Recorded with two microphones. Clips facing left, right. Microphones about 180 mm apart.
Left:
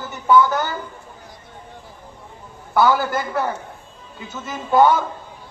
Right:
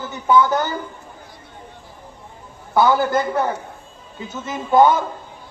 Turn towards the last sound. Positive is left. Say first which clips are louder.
# right 1 dB
turn(degrees=-20)  # may be behind; listen again after turning